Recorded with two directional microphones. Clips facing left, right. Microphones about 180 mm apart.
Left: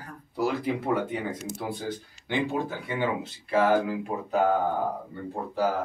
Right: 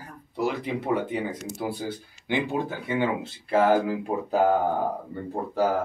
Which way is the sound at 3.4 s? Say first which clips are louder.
Right 2 dB; 30° right (ahead or behind).